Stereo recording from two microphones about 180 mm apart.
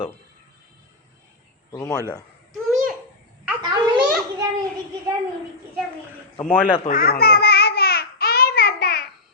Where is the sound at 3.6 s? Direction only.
25° right (ahead or behind).